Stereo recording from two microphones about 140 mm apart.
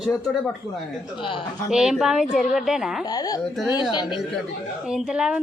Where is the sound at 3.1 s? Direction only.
25° left (ahead or behind).